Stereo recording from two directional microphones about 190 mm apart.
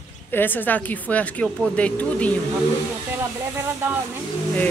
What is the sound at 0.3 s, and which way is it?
Speech, 10° left (ahead or behind).